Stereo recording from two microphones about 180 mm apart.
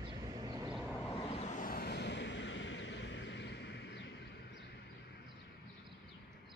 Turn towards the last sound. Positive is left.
turn(degrees=75)  # may be behind; listen again after turning